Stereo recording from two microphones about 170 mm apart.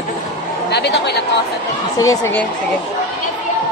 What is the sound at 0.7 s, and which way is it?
Speech, 85° left.